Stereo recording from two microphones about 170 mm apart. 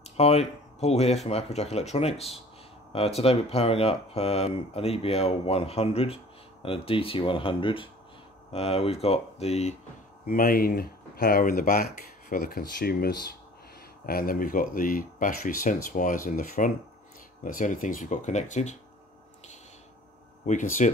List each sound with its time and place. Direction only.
0.2 s speech: 40° left (ahead or behind)
10.2 s speech: 60° left (ahead or behind); by 18.8 s 45° left (ahead or behind)
20.4 s speech: 45° left (ahead or behind)